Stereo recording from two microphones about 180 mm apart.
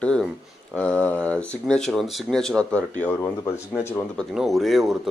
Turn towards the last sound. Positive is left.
turn(degrees=0)  # may be behind; listen again after turning